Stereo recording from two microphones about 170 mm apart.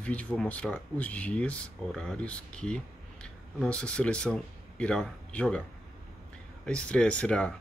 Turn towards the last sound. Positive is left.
turn(degrees=5)  # may be behind; listen again after turning